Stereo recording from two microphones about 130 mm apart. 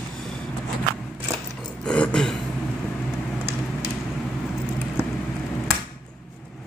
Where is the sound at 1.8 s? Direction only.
5° left (ahead or behind).